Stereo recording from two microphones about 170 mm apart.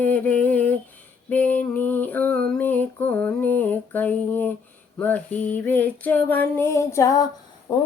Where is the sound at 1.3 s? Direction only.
10° left (ahead or behind).